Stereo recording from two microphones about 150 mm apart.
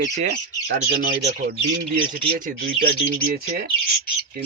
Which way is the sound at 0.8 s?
80° right.